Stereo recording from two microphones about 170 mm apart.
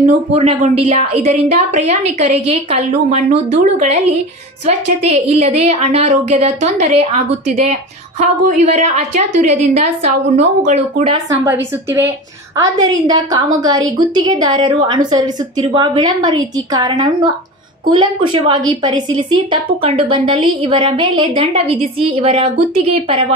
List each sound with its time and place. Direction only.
0.3 s a woman's voice: 35° right (ahead or behind)
11.4 s a woman's voice: 10° right (ahead or behind)
12.5 s a woman's voice: 25° right (ahead or behind)